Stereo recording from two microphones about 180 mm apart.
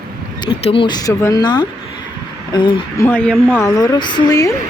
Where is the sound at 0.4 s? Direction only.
30° left (ahead or behind).